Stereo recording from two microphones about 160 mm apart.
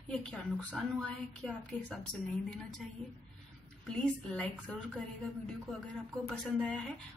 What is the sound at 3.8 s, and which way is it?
Speech, 5° left (ahead or behind).